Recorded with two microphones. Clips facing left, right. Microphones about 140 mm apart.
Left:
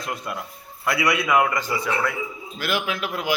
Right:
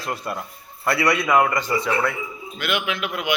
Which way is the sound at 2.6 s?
35° left (ahead or behind).